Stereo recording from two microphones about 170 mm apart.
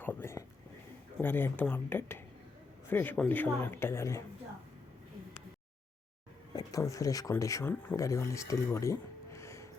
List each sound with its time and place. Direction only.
0.0 s a sound: 10° left (ahead or behind)
1.2 s speech: 10° left (ahead or behind)
6.6 s speech: 20° left (ahead or behind)